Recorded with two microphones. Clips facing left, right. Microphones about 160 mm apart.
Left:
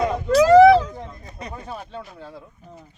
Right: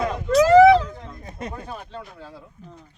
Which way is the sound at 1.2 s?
55° right (ahead or behind).